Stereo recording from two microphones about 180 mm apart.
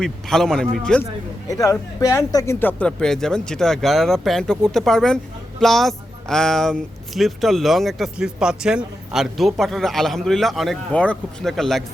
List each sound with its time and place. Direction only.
0.0 s speech: 5° left (ahead or behind)
1.5 s a man's voice: 20° left (ahead or behind); by 11.8 s centre (ahead or behind)